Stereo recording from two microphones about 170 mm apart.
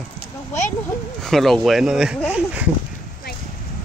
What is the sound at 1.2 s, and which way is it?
Speech, centre (ahead or behind).